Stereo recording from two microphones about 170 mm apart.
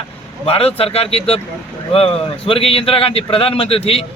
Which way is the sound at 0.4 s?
35° left (ahead or behind).